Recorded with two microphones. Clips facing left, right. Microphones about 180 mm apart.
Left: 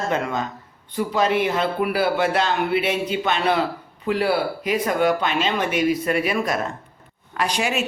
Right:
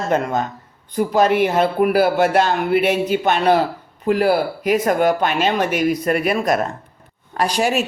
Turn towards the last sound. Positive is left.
turn(degrees=-40)  # may be behind; listen again after turning